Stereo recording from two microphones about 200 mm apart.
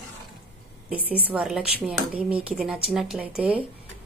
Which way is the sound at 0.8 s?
5° right (ahead or behind).